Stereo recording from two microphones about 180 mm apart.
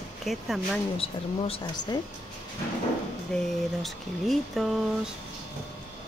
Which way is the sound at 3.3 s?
Centre (ahead or behind).